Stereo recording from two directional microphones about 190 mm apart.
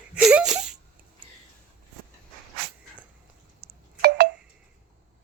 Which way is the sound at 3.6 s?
10° right (ahead or behind).